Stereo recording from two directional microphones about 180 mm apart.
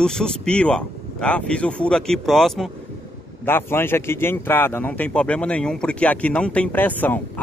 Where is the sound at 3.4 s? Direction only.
15° left (ahead or behind).